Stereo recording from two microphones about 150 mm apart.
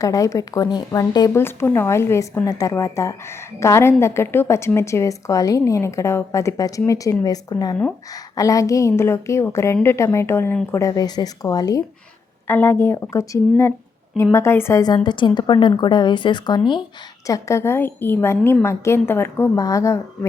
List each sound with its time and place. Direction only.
0.0 s a woman's voice: 20° left (ahead or behind)
12.5 s a woman's voice: 15° left (ahead or behind); by 16.8 s 30° left (ahead or behind)
17.2 s a woman's voice: 20° left (ahead or behind)